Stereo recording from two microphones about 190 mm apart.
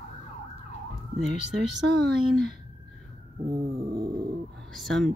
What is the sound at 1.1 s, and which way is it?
Speech, centre (ahead or behind).